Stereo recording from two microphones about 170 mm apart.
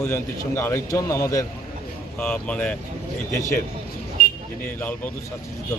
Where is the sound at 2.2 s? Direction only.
10° left (ahead or behind).